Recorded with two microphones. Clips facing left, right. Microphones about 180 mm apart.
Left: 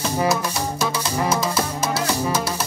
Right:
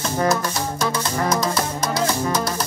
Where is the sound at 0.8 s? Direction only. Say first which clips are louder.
Right 1 dB; 5° left (ahead or behind).